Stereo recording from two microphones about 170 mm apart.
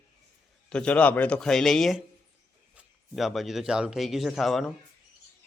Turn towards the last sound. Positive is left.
turn(degrees=0)  # may be behind; listen again after turning